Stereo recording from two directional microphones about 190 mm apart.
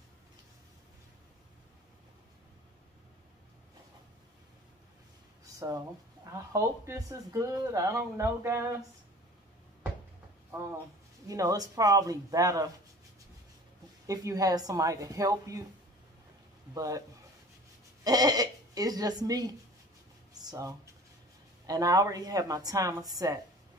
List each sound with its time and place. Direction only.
5.4 s a sound: 15° right (ahead or behind)
6.3 s speech: 15° right (ahead or behind)
11.2 s speech: 20° right (ahead or behind)
14.0 s speech: 15° right (ahead or behind)
16.7 s speech: 15° right (ahead or behind)
18.0 s speech: 20° right (ahead or behind)